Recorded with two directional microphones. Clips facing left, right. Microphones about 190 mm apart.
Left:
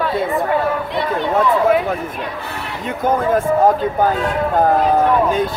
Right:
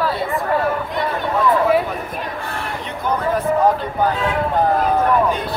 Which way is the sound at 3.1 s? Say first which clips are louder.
Left 3 dB; 45° left (ahead or behind).